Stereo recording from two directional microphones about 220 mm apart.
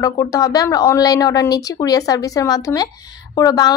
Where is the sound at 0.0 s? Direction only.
15° left (ahead or behind).